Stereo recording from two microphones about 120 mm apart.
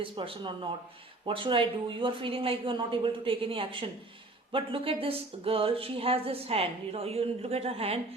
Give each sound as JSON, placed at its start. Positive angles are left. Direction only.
{"t": 0.0, "sound": "speech", "side_deg": -45}